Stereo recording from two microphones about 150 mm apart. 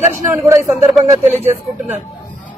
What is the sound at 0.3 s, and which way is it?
A man's voice, 20° right (ahead or behind).